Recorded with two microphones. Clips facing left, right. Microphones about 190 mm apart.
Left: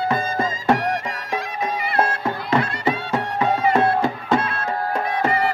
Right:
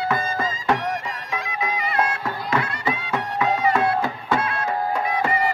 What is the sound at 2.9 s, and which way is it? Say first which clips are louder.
Music: left 3 dB; 30° left (ahead or behind).